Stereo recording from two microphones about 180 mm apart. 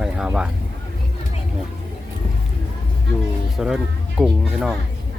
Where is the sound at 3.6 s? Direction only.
Centre (ahead or behind).